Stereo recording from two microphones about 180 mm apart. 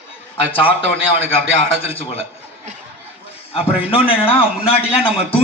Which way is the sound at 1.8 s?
35° left (ahead or behind).